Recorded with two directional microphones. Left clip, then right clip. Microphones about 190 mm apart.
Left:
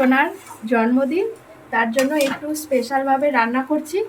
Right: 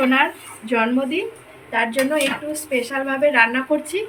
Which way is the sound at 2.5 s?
65° left (ahead or behind).